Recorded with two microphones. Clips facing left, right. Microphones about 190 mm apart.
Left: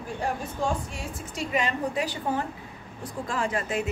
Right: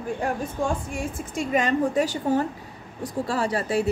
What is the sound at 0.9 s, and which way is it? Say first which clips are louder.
A woman's voice: right 5 dB; 50° right (ahead or behind).